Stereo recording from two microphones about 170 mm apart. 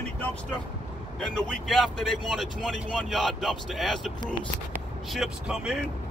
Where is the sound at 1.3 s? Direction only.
5° left (ahead or behind).